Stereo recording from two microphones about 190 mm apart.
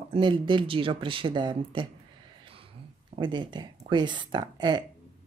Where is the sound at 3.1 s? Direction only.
25° right (ahead or behind).